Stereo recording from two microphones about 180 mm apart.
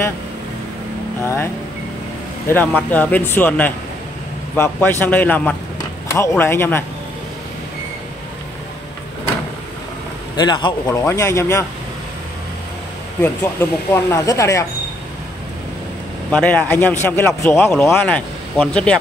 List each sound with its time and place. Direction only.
2.4 s speech: 10° left (ahead or behind)
10.3 s speech: 25° left (ahead or behind)
13.2 s speech: 15° left (ahead or behind)
16.3 s speech: 5° left (ahead or behind)